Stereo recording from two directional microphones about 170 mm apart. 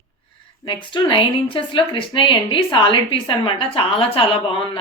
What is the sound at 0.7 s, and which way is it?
A woman's voice, 25° left (ahead or behind).